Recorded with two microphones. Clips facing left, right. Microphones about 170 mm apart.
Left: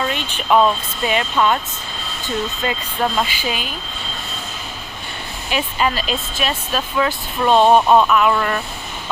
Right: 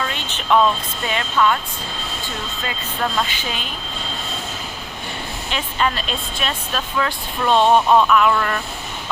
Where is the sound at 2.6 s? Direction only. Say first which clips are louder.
Left 1 dB; 20° left (ahead or behind).